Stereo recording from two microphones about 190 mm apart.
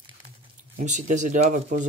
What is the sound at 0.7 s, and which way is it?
Speech, 40° right (ahead or behind).